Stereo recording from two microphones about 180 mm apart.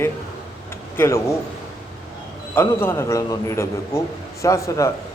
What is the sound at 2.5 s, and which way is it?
A man's voice, 10° left (ahead or behind).